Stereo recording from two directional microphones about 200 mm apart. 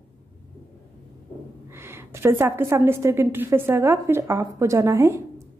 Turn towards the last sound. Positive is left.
turn(degrees=-15)  # may be behind; listen again after turning